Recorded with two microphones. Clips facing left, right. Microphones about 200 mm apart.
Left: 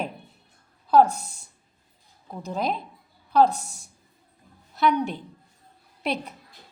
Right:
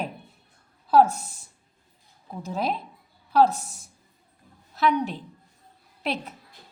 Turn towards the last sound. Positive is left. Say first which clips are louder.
# left 1 dB
turn(degrees=0)  # may be behind; listen again after turning